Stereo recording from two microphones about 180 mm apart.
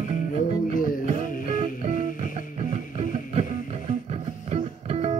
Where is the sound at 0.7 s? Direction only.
50° left (ahead or behind).